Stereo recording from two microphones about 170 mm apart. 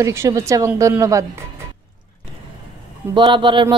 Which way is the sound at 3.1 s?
30° right (ahead or behind).